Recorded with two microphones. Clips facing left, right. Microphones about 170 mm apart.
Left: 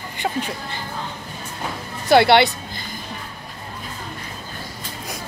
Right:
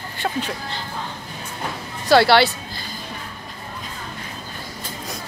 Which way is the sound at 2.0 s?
20° left (ahead or behind).